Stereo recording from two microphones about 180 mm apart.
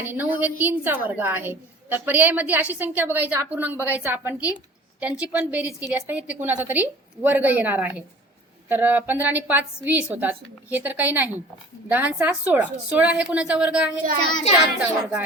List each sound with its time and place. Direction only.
0.1 s a woman's voice: 10° right (ahead or behind)
14.3 s child singing: 25° left (ahead or behind)